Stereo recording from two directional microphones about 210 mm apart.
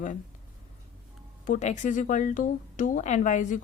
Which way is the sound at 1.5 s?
35° left (ahead or behind).